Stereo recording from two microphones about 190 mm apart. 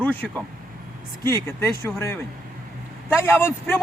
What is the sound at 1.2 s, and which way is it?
Speech, 15° left (ahead or behind).